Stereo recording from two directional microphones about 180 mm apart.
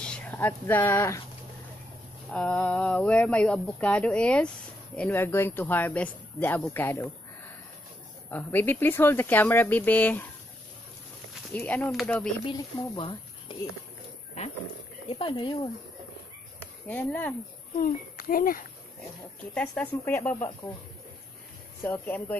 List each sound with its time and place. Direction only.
0.0 s speech: 10° left (ahead or behind)
2.3 s speech: 5° left (ahead or behind)
8.3 s speech: 10° left (ahead or behind)
11.5 s speech: 10° left (ahead or behind)
12.4 s speech: 25° left (ahead or behind)
15.0 s speech: 30° left (ahead or behind)
16.8 s speech: 10° left (ahead or behind)
17.7 s a child's voice: 50° left (ahead or behind)
19.5 s speech: 5° left (ahead or behind)
21.8 s speech: 10° left (ahead or behind)